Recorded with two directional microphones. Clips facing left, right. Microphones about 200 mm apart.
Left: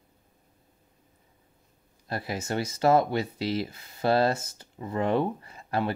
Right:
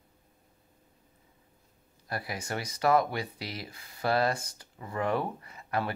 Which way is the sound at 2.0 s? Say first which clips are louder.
Left 4 dB; 25° left (ahead or behind).